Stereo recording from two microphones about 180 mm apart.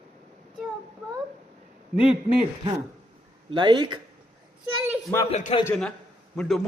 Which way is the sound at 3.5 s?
25° right (ahead or behind).